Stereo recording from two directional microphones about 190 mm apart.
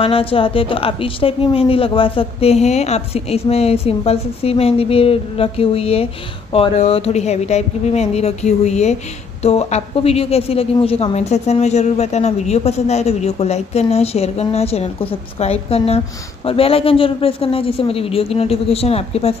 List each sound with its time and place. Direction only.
0.0 s a woman's voice: 30° left (ahead or behind)